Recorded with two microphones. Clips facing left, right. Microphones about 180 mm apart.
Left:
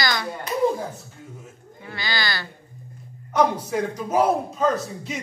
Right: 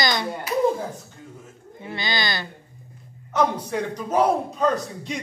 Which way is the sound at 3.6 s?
5° left (ahead or behind).